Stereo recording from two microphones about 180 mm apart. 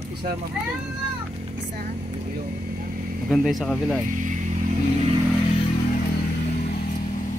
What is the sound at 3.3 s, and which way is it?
Speech, centre (ahead or behind).